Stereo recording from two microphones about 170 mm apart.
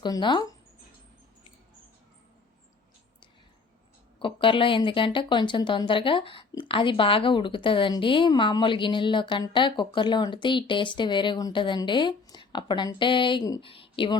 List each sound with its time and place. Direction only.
0.0 s speech: 25° left (ahead or behind)
4.2 s speech: 30° left (ahead or behind)